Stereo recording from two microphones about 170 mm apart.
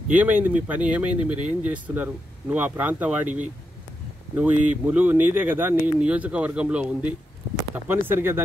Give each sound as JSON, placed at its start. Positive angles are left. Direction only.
{"t": 0.1, "sound": "speech", "side_deg": -10}
{"t": 1.1, "sound": "speech", "side_deg": -45}
{"t": 1.6, "sound": "speech", "side_deg": -10}
{"t": 4.4, "sound": "speech", "side_deg": -10}